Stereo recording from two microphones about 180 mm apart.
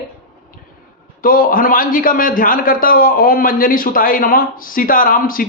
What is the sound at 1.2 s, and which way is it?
A man's voice, 50° left (ahead or behind).